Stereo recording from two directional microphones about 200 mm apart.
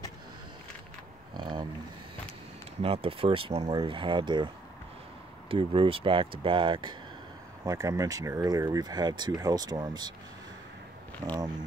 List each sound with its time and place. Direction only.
1.3 s a sound: 20° right (ahead or behind)
2.8 s speech: 30° right (ahead or behind)
5.5 s speech: 25° right (ahead or behind)
11.2 s speech: 15° right (ahead or behind)